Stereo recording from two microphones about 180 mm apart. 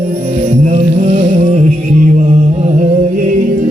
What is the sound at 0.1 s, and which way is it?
Music, 40° right (ahead or behind).